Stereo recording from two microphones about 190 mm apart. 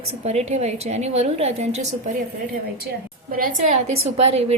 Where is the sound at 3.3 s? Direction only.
50° right (ahead or behind).